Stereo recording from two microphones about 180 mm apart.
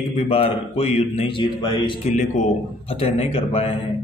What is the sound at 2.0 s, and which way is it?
A man's voice, 40° left (ahead or behind).